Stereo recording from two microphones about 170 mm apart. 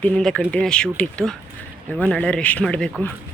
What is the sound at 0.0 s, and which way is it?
Speech, 5° left (ahead or behind).